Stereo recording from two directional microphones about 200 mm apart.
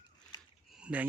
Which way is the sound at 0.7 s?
5° right (ahead or behind).